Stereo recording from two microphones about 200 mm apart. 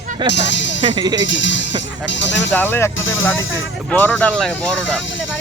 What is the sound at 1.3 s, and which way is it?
Speech, 65° left (ahead or behind).